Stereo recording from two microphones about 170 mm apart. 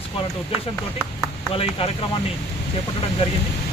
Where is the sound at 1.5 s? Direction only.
35° left (ahead or behind).